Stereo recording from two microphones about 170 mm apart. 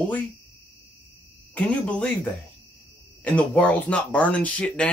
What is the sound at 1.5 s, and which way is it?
Speech, 5° left (ahead or behind).